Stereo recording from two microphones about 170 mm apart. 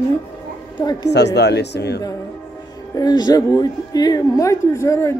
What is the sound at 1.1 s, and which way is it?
Speech, 85° left.